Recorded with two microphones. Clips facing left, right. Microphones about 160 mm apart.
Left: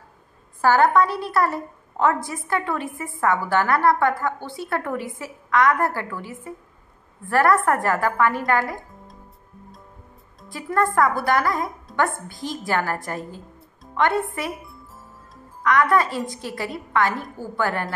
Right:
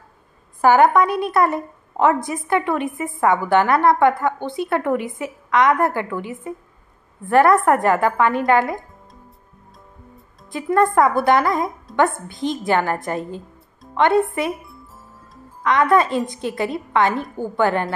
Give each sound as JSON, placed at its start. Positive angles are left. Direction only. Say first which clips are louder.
{"t": 0.6, "sound": "a woman's voice", "louder": "right 3 dB", "side_deg": -15}
{"t": 10.5, "sound": "a woman's voice", "louder": "right 5 dB", "side_deg": -20}
{"t": 15.6, "sound": "a woman's voice", "louder": "right 3 dB", "side_deg": -20}